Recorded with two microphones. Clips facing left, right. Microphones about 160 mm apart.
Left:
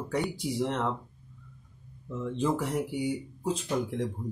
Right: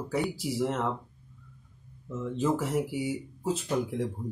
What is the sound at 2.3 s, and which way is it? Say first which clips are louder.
Speech: right 1 dB; 5° right (ahead or behind).